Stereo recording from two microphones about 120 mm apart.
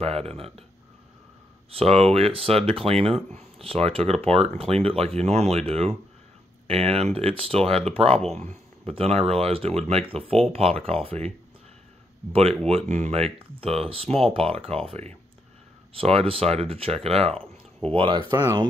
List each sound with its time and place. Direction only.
0.0 s speech: 55° right (ahead or behind)
1.7 s speech: 55° right (ahead or behind)
15.9 s speech: 55° right (ahead or behind)